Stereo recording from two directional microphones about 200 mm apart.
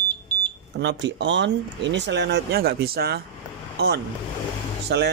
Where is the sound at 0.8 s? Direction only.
60° right (ahead or behind).